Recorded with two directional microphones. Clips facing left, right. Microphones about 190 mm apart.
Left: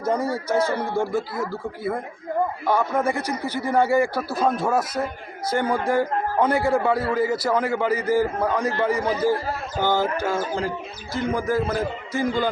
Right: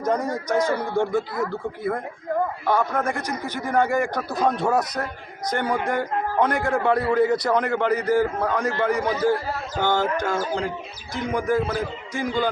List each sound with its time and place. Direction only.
0.0 s a man's voice: 10° left (ahead or behind)
5.6 s speech: 15° right (ahead or behind)
5.9 s a man's voice: 10° left (ahead or behind)